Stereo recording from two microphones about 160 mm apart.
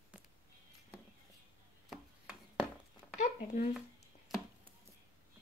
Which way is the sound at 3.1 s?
50° left (ahead or behind).